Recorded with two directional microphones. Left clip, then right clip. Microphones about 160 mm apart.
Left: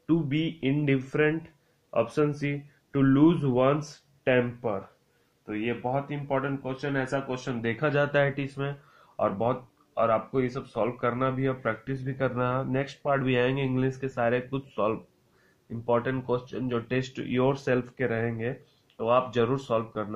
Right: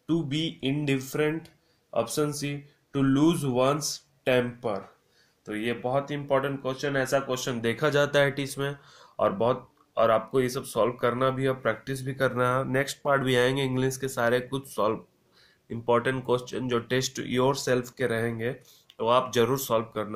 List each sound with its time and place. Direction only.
0.0 s speech: 10° left (ahead or behind)
5.5 s speech: 15° right (ahead or behind)